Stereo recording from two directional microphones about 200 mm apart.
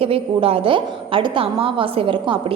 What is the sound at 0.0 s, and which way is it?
A woman's voice, 30° right (ahead or behind).